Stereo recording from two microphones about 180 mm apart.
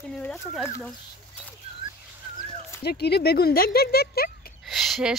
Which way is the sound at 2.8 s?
65° left (ahead or behind).